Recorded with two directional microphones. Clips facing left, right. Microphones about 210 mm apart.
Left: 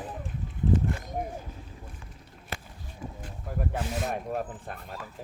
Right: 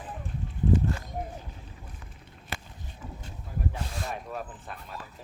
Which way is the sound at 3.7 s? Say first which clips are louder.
Left 5 dB; 50° left (ahead or behind).